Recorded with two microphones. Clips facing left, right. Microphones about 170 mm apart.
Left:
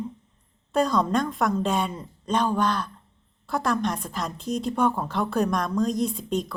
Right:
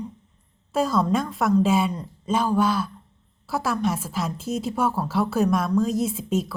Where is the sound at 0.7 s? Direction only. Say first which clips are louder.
Even; 5° right (ahead or behind).